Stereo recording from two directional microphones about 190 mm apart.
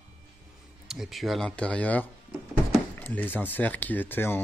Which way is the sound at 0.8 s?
Centre (ahead or behind).